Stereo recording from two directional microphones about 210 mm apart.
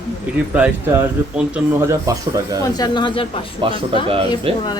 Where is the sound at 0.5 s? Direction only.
5° right (ahead or behind).